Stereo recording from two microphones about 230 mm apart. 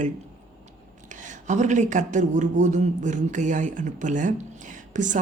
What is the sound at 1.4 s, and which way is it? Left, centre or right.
Speech, right.